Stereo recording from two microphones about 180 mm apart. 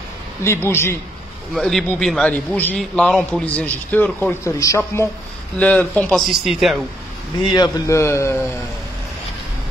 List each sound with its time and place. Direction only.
0.4 s a man's voice: 15° left (ahead or behind)
1.5 s a man's voice: centre (ahead or behind)
7.5 s a man's voice: 20° left (ahead or behind)